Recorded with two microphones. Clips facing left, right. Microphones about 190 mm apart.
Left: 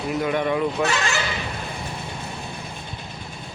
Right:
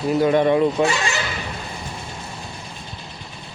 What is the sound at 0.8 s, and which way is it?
Speech, 15° right (ahead or behind).